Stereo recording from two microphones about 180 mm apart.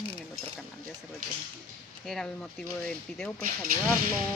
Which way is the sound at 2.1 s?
5° left (ahead or behind).